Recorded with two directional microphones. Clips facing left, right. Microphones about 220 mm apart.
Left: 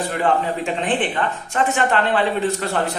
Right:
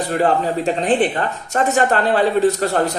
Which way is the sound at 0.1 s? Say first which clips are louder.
Right 5 dB; 35° right (ahead or behind).